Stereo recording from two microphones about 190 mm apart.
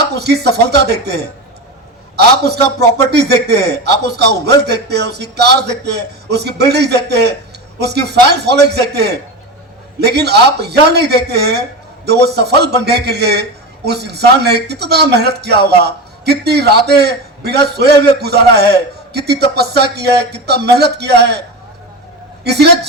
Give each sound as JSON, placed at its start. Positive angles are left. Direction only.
{"t": 0.0, "sound": "a man's voice", "side_deg": -60}
{"t": 22.4, "sound": "a man's voice", "side_deg": -60}